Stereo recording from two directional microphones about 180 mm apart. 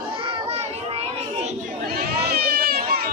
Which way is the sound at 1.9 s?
60° right (ahead or behind).